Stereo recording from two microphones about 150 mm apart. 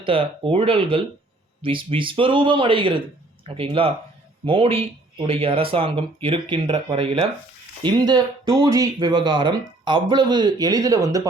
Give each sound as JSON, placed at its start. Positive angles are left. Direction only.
{"t": 0.0, "sound": "speech", "side_deg": -35}